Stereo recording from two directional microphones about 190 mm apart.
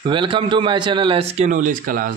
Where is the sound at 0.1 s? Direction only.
25° right (ahead or behind); by 2.0 s 45° right (ahead or behind).